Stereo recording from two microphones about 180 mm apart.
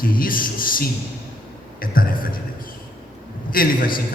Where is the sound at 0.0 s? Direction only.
50° left (ahead or behind).